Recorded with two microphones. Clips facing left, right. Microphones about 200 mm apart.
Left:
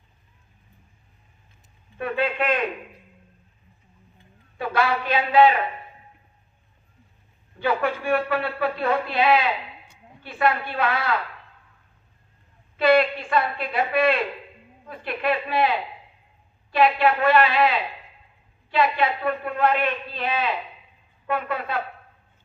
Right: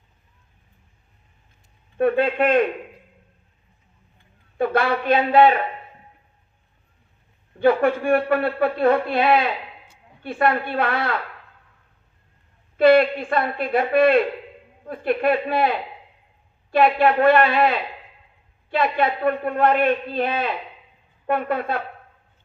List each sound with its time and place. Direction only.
2.0 s a man's voice: 55° right (ahead or behind)
4.5 s a man's voice: 55° right (ahead or behind)
7.6 s a man's voice: 55° right (ahead or behind)
12.7 s speech: 55° right (ahead or behind)